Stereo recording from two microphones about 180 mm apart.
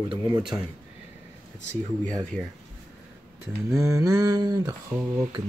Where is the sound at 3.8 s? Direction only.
15° right (ahead or behind).